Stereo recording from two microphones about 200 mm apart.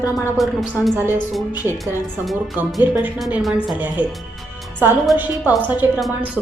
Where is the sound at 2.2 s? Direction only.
Centre (ahead or behind).